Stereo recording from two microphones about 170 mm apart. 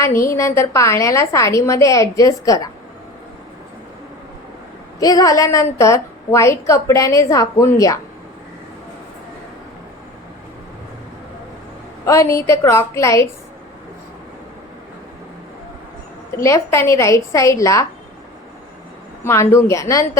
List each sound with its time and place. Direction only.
0.0 s a woman's voice: 15° left (ahead or behind)
4.9 s a woman's voice: 20° left (ahead or behind)
12.0 s a woman's voice: 20° left (ahead or behind)
16.4 s a woman's voice: 15° left (ahead or behind)
19.2 s a woman's voice: 15° left (ahead or behind)